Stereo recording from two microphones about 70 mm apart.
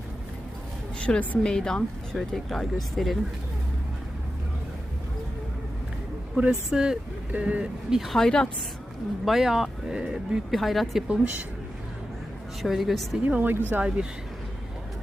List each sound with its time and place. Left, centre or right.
0.9 s a sound: centre
1.5 s speech: centre
6.3 s speech: centre
9.2 s speech: centre
10.5 s speech: centre
11.1 s speech: right
12.6 s speech: centre
13.2 s speech: right
13.8 s speech: centre